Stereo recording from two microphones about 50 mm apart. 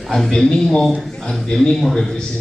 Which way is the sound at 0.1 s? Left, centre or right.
Centre.